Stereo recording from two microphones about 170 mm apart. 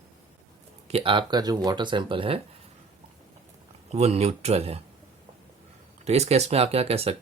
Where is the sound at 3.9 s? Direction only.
40° right (ahead or behind).